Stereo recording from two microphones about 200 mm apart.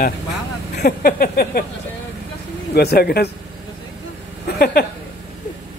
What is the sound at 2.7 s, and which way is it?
Speech, 55° left (ahead or behind).